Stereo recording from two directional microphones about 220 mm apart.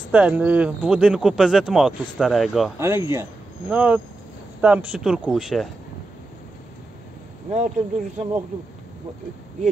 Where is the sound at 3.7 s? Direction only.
5° right (ahead or behind).